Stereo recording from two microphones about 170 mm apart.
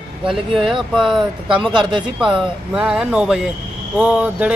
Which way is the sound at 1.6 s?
25° right (ahead or behind).